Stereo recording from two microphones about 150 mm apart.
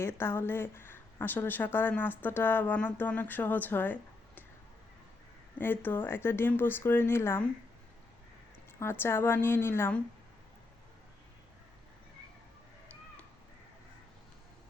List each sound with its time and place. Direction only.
0.0 s speech: 15° left (ahead or behind)
5.5 s speech: 15° left (ahead or behind)
8.8 s speech: 15° left (ahead or behind)